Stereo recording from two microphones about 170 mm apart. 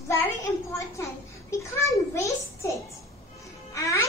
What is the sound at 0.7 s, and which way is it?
Speech, 15° left (ahead or behind).